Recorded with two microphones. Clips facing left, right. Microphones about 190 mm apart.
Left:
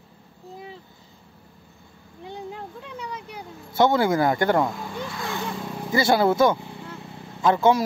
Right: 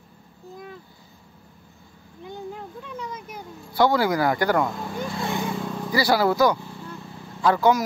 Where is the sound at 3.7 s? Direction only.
25° left (ahead or behind).